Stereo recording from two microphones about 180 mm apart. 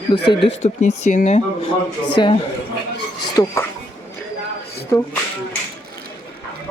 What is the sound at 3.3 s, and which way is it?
Speech, 15° left (ahead or behind).